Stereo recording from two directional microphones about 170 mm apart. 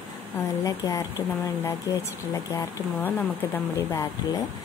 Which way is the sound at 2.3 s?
15° left (ahead or behind).